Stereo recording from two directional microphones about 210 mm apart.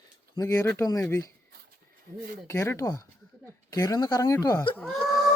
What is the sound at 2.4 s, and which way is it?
A woman's voice, 15° left (ahead or behind).